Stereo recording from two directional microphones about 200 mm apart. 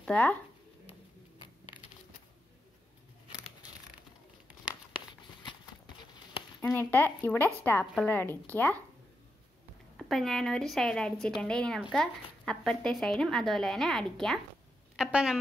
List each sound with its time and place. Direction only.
0.0 s speech: 5° left (ahead or behind)
5.4 s clip-clop: 25° left (ahead or behind)
6.6 s a woman's voice: 10° left (ahead or behind)
7.8 s a woman's voice: centre (ahead or behind)
8.1 s a woman's voice: 10° left (ahead or behind)
9.9 s a woman's voice: centre (ahead or behind)